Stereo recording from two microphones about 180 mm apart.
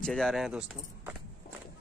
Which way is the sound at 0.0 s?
Centre (ahead or behind).